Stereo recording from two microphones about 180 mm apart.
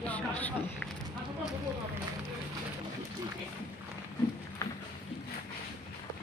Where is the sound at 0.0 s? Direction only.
5° left (ahead or behind).